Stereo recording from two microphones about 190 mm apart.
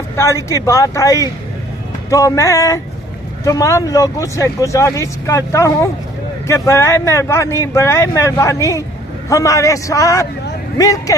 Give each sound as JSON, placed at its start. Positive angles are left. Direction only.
{"t": 0.1, "sound": "speech", "side_deg": 15}